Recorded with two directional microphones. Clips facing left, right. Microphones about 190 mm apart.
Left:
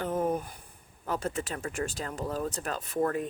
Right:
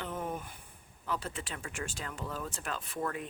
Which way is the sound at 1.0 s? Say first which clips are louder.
Left 6 dB; 45° left (ahead or behind).